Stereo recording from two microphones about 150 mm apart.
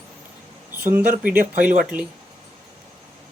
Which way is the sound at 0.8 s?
15° right (ahead or behind).